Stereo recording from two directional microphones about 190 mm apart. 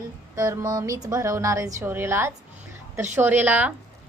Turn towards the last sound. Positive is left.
turn(degrees=-10)  # may be behind; listen again after turning